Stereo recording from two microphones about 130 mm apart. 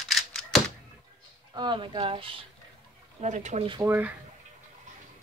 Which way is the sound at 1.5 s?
35° right (ahead or behind).